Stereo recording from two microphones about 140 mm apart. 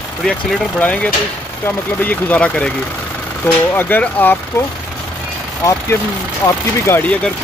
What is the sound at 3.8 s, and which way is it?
Speech, 15° left (ahead or behind).